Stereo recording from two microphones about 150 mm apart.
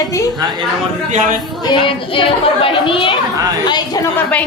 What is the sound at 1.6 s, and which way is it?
A woman's voice, 30° left (ahead or behind).